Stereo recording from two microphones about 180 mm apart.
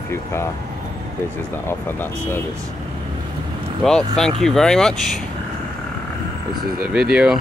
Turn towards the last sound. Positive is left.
turn(degrees=-5)  # may be behind; listen again after turning